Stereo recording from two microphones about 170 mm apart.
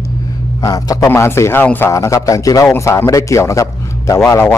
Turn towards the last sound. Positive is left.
turn(degrees=15)  # may be behind; listen again after turning